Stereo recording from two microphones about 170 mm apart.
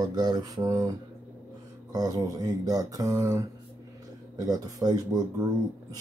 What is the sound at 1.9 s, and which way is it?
Speech, 20° right (ahead or behind).